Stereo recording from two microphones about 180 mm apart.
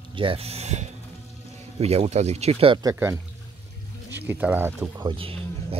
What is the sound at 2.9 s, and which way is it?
Speech, 15° right (ahead or behind).